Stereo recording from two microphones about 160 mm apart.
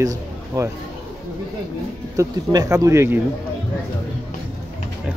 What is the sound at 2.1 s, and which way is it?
Speech, 20° right (ahead or behind).